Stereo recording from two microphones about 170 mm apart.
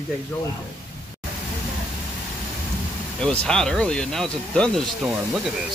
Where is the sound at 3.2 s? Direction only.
5° left (ahead or behind).